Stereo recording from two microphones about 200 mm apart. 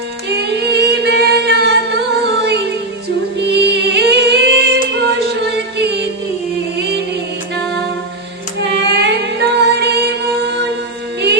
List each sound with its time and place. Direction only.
0.3 s singing: 55° right (ahead or behind)
2.4 s music: 55° right (ahead or behind)
8.9 s music: 55° right (ahead or behind)